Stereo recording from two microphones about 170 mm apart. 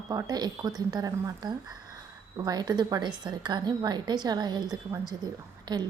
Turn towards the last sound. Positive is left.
turn(degrees=-25)  # may be behind; listen again after turning